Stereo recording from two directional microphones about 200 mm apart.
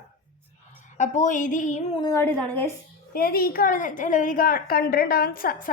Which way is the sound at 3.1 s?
50° left (ahead or behind).